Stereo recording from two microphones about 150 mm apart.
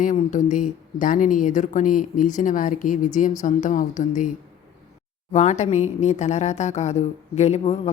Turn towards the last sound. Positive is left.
turn(degrees=45)  # may be behind; listen again after turning